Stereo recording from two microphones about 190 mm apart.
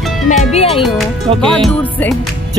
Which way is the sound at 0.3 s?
35° left (ahead or behind).